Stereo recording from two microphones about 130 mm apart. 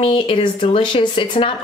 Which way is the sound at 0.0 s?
40° left (ahead or behind).